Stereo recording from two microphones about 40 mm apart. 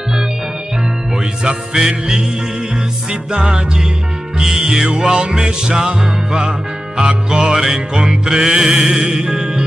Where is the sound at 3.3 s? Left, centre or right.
Centre.